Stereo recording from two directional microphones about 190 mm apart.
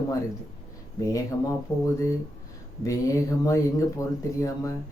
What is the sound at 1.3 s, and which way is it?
Speech, 15° left (ahead or behind).